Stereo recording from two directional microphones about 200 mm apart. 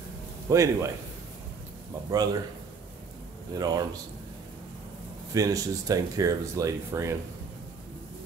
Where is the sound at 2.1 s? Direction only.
20° right (ahead or behind).